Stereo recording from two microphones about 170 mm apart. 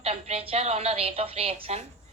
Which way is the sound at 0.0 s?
35° right (ahead or behind).